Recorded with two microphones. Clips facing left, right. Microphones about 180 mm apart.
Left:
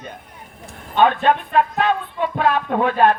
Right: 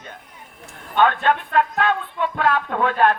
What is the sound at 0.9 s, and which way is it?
Speech, 20° left (ahead or behind).